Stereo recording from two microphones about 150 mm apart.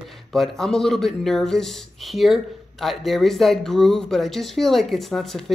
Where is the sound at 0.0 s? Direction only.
Centre (ahead or behind).